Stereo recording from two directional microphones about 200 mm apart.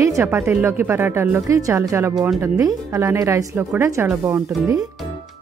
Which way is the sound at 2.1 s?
Centre (ahead or behind).